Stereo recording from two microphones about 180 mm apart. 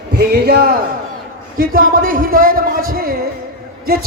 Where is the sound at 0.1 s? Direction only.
65° right (ahead or behind).